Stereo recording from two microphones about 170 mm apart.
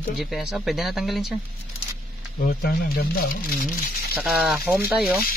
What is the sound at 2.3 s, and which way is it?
Speech, 65° left (ahead or behind).